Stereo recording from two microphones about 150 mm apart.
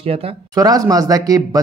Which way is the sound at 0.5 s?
25° right (ahead or behind).